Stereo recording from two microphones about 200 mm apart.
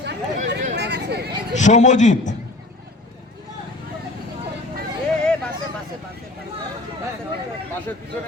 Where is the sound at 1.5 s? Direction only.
35° left (ahead or behind).